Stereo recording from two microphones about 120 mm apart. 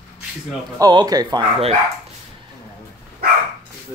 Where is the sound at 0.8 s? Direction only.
35° right (ahead or behind).